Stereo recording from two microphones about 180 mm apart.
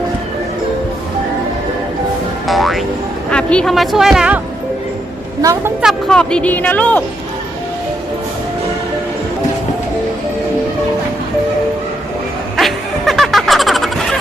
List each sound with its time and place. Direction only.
2.5 s music: centre (ahead or behind)
3.2 s a woman's voice: 5° left (ahead or behind)
5.4 s a woman's voice: 20° right (ahead or behind)
5.8 s a woman's voice: centre (ahead or behind)
12.5 s music: centre (ahead or behind)